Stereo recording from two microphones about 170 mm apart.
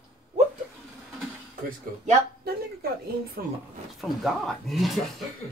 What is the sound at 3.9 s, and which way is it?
Speech, centre (ahead or behind).